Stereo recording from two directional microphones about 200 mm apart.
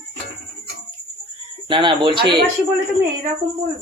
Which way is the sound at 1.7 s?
25° right (ahead or behind).